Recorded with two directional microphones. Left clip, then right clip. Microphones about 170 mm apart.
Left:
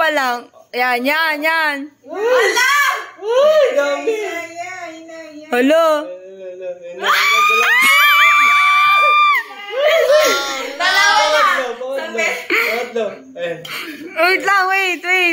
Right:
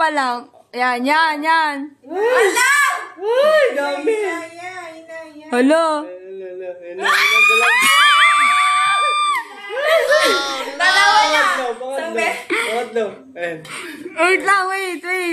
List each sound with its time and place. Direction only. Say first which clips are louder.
0.0 s speech: left 2 dB; centre (ahead or behind)
3.3 s speech: left 2 dB; 5° right (ahead or behind)
5.5 s speech: left 2 dB; centre (ahead or behind)
7.0 s speech: even; 20° right (ahead or behind)
7.4 s a sound: left 1 dB; centre (ahead or behind)
12.1 s speech: left 2 dB; centre (ahead or behind)